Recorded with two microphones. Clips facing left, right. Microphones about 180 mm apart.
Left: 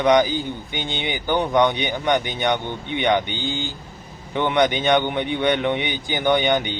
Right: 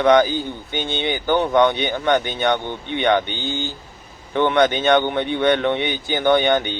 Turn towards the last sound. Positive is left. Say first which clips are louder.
# right 2 dB
turn(degrees=15)  # may be behind; listen again after turning